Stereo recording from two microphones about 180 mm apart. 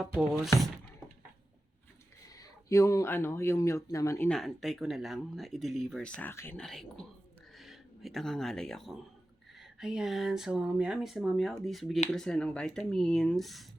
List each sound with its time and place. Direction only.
0.0 s speech: 5° right (ahead or behind)
2.3 s speech: 20° left (ahead or behind)
4.3 s speech: centre (ahead or behind)